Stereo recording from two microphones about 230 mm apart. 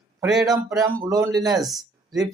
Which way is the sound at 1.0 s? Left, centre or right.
Centre.